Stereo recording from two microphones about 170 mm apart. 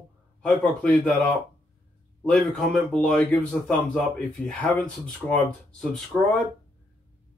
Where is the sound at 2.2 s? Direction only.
5° left (ahead or behind).